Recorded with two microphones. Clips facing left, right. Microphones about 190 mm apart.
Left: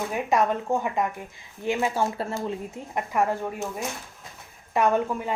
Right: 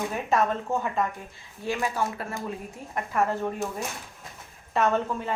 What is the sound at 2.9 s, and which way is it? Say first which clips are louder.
Speech: left 1 dB; 15° left (ahead or behind).